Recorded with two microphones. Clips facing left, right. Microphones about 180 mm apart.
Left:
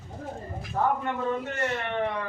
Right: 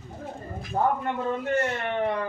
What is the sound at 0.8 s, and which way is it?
Speech, 30° right (ahead or behind).